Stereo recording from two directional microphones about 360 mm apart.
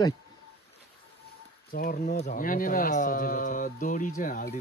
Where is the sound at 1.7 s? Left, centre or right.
Left.